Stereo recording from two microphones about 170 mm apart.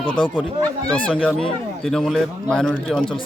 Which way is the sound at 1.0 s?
10° left (ahead or behind).